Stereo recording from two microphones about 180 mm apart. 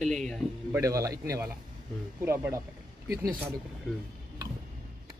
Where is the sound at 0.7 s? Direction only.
20° right (ahead or behind).